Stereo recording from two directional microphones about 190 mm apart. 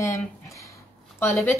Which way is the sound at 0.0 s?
15° left (ahead or behind).